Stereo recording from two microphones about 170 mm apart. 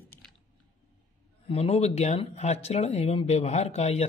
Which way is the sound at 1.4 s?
35° left (ahead or behind).